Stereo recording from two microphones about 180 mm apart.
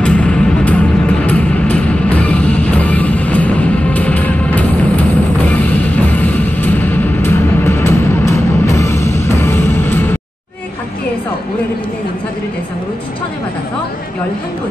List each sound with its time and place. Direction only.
0.0 s music: 5° left (ahead or behind)